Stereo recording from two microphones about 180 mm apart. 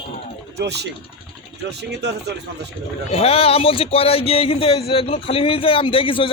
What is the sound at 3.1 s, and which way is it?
Speech, 35° left (ahead or behind).